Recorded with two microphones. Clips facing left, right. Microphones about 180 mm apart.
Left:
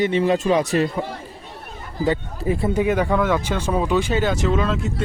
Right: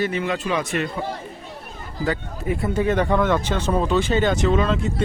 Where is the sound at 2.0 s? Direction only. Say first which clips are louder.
Left 4 dB; 25° left (ahead or behind).